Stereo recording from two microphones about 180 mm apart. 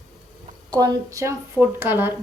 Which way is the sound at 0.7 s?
20° right (ahead or behind).